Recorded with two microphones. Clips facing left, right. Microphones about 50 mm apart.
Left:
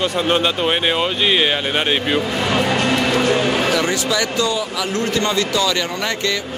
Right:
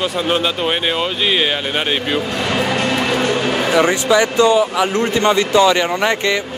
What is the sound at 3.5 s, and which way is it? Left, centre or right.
Speech, right.